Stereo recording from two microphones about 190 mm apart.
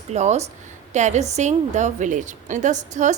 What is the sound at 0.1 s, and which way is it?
A woman's voice, 35° right (ahead or behind).